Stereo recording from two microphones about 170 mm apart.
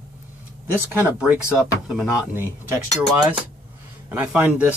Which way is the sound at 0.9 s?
10° right (ahead or behind).